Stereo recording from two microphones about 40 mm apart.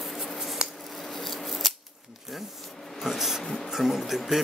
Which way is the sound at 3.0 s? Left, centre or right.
Centre.